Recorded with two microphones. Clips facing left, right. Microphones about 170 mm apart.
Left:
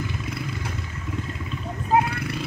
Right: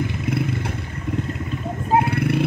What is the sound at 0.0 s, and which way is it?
Vehicle, 60° right (ahead or behind).